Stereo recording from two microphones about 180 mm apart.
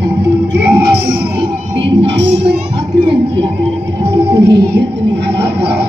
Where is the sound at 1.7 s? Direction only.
75° right (ahead or behind).